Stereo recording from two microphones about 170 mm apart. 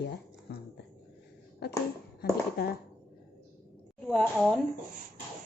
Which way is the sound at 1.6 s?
75° left (ahead or behind).